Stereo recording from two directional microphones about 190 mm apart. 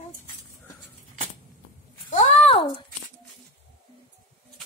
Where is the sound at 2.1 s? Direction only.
30° left (ahead or behind).